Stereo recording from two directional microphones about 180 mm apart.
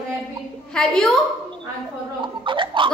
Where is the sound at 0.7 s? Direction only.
5° left (ahead or behind).